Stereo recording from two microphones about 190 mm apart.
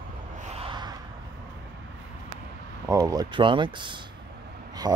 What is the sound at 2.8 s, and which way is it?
Speech, 20° right (ahead or behind).